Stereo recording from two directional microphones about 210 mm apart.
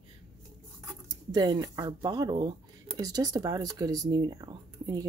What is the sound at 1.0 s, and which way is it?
Speech, 20° right (ahead or behind).